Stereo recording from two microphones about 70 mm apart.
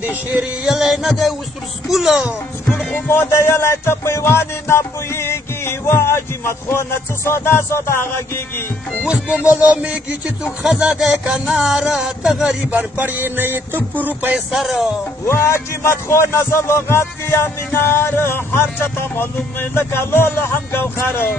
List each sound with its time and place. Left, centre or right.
0.0 s speech: right
0.7 s music: centre
3.1 s music: left
9.0 s music: centre
12.4 s speech: right
14.5 s music: centre
15.2 s music: left